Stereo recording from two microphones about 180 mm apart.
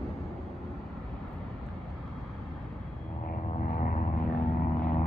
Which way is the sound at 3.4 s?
45° left (ahead or behind).